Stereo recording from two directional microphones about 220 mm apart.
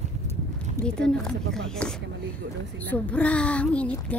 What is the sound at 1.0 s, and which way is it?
A woman's voice, 5° left (ahead or behind).